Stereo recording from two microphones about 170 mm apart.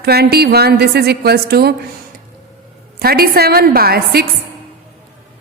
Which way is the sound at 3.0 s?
65° right (ahead or behind).